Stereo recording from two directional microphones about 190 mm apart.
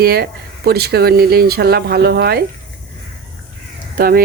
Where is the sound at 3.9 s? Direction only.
50° right (ahead or behind).